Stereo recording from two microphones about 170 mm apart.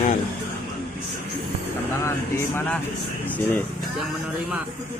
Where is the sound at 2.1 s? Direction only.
15° left (ahead or behind).